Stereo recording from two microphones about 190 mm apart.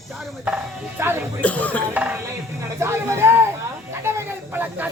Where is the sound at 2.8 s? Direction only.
15° right (ahead or behind).